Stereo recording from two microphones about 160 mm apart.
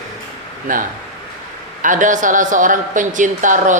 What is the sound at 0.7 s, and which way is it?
A man's voice, 55° right (ahead or behind).